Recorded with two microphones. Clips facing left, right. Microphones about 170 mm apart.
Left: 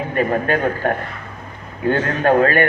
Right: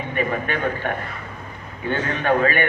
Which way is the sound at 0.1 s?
40° left (ahead or behind).